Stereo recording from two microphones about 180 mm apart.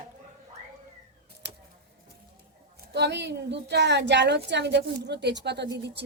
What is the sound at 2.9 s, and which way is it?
A woman's voice, 70° right (ahead or behind).